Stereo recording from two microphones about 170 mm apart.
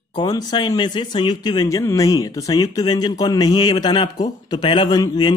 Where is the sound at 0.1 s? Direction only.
25° left (ahead or behind).